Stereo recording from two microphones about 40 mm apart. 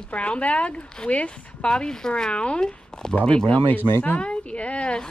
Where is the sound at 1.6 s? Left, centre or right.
Left.